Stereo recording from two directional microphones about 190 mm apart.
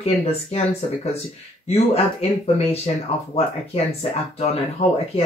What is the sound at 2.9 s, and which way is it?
Speech, 35° left (ahead or behind).